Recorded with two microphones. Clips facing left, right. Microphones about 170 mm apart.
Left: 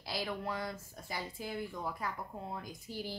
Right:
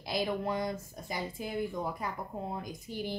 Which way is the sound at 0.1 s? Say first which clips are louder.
Right 6 dB; 20° right (ahead or behind).